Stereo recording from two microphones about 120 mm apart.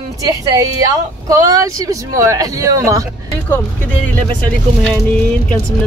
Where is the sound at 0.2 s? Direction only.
30° right (ahead or behind).